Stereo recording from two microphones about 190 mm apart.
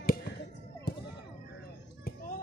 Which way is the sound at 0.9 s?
55° left (ahead or behind).